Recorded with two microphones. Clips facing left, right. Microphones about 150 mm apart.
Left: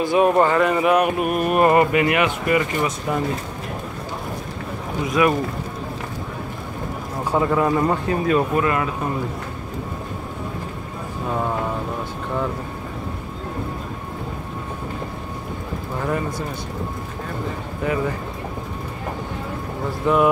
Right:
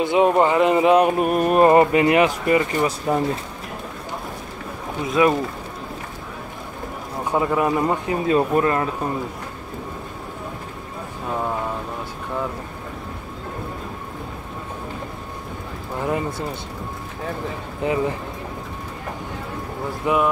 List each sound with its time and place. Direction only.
0.0 s speech: 20° right (ahead or behind)
5.0 s speech: 25° right (ahead or behind)
7.2 s speech: 15° right (ahead or behind)
8.5 s speech: 35° right (ahead or behind)
17.8 s speech: 25° right (ahead or behind)
20.1 s speech: 15° right (ahead or behind)